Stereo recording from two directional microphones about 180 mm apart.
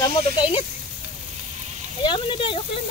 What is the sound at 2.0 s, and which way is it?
Speech, 25° left (ahead or behind).